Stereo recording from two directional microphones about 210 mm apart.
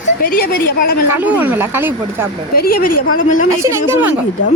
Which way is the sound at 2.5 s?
45° left (ahead or behind).